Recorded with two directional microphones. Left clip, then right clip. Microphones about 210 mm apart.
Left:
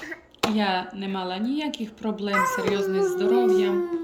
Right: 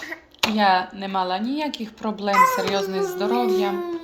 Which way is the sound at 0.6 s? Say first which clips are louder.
Right 7 dB; centre (ahead or behind).